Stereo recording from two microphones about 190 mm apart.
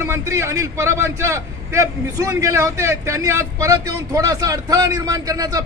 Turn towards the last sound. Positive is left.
turn(degrees=-20)  # may be behind; listen again after turning